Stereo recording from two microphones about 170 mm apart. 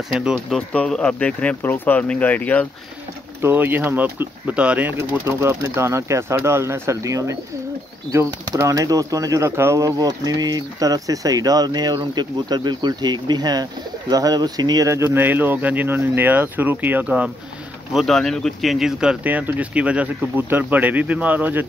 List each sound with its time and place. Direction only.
0.1 s speech: 5° right (ahead or behind)
3.3 s speech: 10° right (ahead or behind)